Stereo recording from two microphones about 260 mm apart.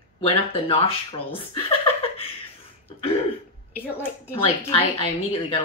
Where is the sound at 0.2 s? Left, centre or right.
Left.